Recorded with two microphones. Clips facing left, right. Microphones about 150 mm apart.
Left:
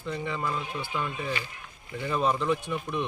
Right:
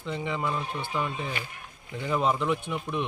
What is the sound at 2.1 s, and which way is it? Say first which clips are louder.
Speech: even; 15° right (ahead or behind).